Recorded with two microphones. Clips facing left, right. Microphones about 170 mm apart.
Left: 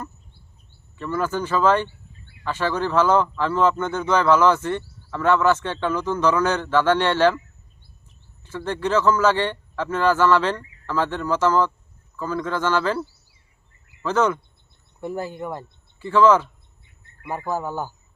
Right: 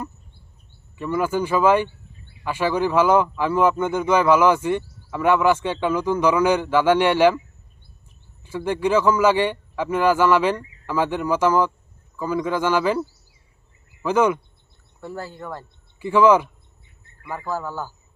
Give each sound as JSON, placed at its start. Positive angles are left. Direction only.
{"t": 0.9, "sound": "a man's voice", "side_deg": -10}
{"t": 8.4, "sound": "a man's voice", "side_deg": -10}
{"t": 15.0, "sound": "speech", "side_deg": 20}
{"t": 16.0, "sound": "a man's voice", "side_deg": -15}
{"t": 17.2, "sound": "speech", "side_deg": 20}